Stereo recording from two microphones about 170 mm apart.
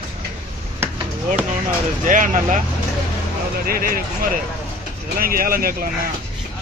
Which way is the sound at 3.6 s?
60° right (ahead or behind).